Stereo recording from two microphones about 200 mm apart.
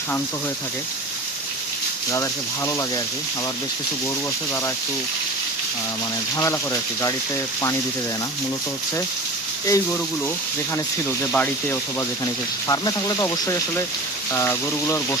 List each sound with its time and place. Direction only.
2.6 s speech: 15° left (ahead or behind)
6.3 s speech: 15° left (ahead or behind)
9.6 s speech: 15° left (ahead or behind)
11.2 s speech: 10° left (ahead or behind)